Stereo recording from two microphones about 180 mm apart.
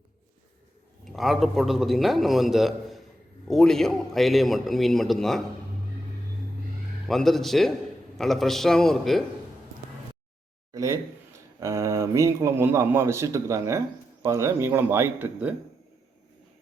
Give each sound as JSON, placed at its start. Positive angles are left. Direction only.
{"t": 1.0, "sound": "a man's voice", "side_deg": 0}
{"t": 7.1, "sound": "a man's voice", "side_deg": 0}
{"t": 10.8, "sound": "speech", "side_deg": -15}